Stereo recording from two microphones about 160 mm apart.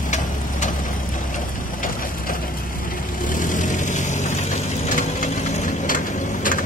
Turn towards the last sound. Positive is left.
turn(degrees=60)  # may be behind; listen again after turning